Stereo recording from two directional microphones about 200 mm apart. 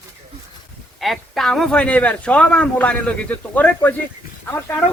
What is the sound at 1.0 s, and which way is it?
Speech, centre (ahead or behind).